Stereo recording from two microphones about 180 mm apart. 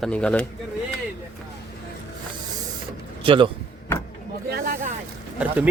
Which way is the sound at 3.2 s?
30° right (ahead or behind).